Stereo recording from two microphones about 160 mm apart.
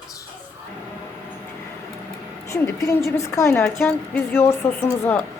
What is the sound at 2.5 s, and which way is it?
A woman's voice, 20° left (ahead or behind).